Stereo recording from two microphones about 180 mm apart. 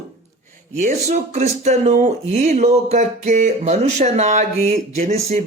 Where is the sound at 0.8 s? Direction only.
40° right (ahead or behind).